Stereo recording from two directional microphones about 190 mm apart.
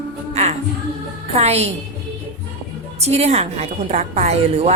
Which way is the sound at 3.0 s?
35° right (ahead or behind).